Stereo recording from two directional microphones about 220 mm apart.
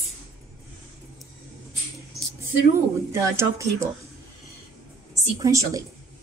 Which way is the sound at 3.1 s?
10° right (ahead or behind).